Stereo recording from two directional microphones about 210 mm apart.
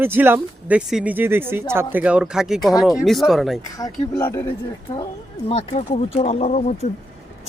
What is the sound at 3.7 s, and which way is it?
Speech, 15° left (ahead or behind).